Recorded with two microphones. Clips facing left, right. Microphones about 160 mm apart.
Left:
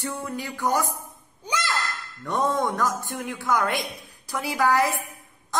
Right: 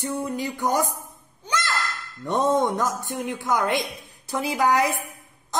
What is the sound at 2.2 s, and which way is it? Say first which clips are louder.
A woman's voice: right 3 dB; 20° right (ahead or behind).